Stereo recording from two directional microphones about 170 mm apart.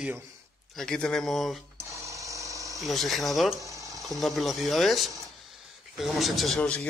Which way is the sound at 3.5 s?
20° right (ahead or behind).